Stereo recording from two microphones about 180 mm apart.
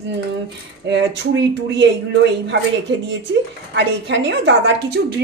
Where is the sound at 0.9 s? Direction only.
75° right (ahead or behind).